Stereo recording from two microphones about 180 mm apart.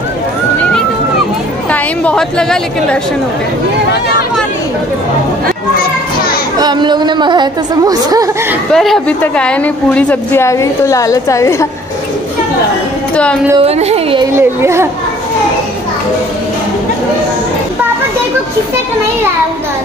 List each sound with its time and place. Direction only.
1.7 s a woman's voice: 5° left (ahead or behind)
6.6 s a woman's voice: 25° right (ahead or behind)
8.7 s a woman's voice: centre (ahead or behind)
13.1 s a woman's voice: 5° left (ahead or behind)
13.6 s speech: 35° right (ahead or behind)
14.6 s a child's voice: 15° right (ahead or behind)